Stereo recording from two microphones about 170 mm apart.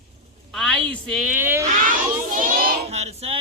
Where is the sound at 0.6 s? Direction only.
5° left (ahead or behind).